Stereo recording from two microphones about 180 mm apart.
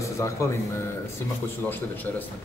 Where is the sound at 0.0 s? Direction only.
15° left (ahead or behind).